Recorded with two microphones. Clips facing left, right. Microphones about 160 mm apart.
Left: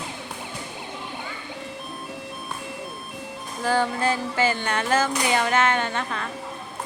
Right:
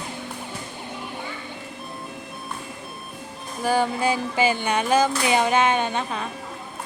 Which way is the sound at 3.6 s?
15° right (ahead or behind).